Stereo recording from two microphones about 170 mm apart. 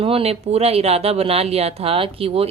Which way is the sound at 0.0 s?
35° right (ahead or behind).